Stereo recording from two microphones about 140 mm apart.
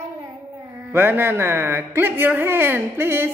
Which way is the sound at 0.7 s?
15° right (ahead or behind).